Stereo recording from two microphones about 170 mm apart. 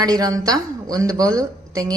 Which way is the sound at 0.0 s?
20° right (ahead or behind).